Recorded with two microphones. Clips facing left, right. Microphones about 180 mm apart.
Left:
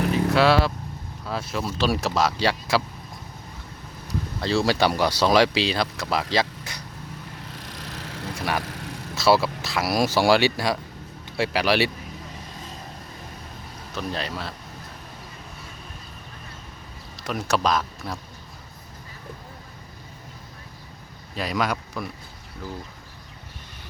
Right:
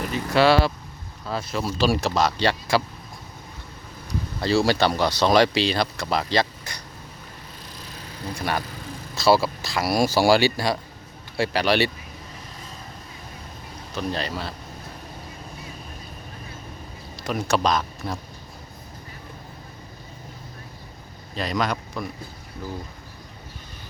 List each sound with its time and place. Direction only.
0.1 s vehicle: centre (ahead or behind)
1.3 s speech: centre (ahead or behind)
4.4 s speech: centre (ahead or behind)
4.8 s speech: 10° left (ahead or behind)
7.7 s vehicle: 80° left
8.4 s speech: 5° left (ahead or behind)
8.6 s a sound: 75° left (ahead or behind)
9.1 s speech: 5° left (ahead or behind)
13.9 s speech: centre (ahead or behind)
17.2 s speech: centre (ahead or behind)
21.3 s a man's voice: 5° left (ahead or behind)